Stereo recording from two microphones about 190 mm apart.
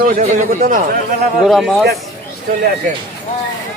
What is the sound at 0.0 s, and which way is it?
Speech, 45° right (ahead or behind).